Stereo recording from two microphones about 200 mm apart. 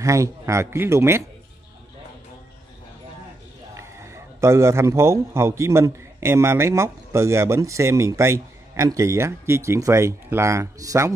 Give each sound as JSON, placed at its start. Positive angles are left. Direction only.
{"t": 0.0, "sound": "a man's voice", "side_deg": -15}
{"t": 3.7, "sound": "a man's voice", "side_deg": -15}